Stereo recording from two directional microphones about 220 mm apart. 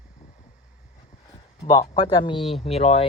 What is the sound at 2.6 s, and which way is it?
Speech, 25° left (ahead or behind).